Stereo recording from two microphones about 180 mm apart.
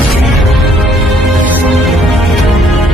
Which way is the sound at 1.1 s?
Centre (ahead or behind).